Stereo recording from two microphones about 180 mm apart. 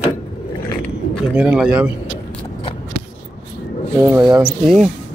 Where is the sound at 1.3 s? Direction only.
5° right (ahead or behind).